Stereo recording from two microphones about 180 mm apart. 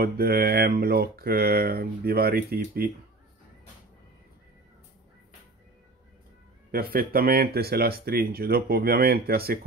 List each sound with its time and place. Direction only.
0.0 s speech: 60° right (ahead or behind)
6.7 s speech: 55° right (ahead or behind)